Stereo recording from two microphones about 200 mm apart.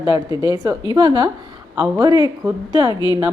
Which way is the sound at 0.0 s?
15° right (ahead or behind).